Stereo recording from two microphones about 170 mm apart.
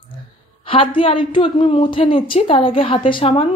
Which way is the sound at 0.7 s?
30° left (ahead or behind).